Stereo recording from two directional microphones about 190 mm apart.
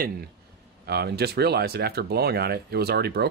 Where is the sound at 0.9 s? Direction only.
60° right (ahead or behind).